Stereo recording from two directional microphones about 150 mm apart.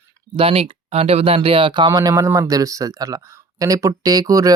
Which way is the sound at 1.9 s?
20° right (ahead or behind).